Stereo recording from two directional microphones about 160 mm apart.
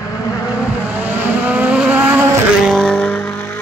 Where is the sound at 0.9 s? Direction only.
10° right (ahead or behind).